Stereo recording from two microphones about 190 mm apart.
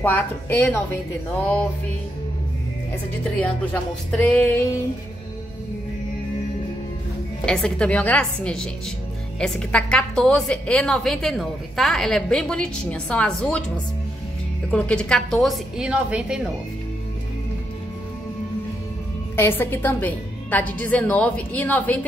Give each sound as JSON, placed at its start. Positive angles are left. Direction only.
{"t": 0.0, "sound": "a woman's voice", "side_deg": 10}
{"t": 3.3, "sound": "a woman's voice", "side_deg": 5}
{"t": 7.4, "sound": "a woman's voice", "side_deg": 5}
{"t": 14.7, "sound": "a woman's voice", "side_deg": 5}
{"t": 19.3, "sound": "a woman's voice", "side_deg": 10}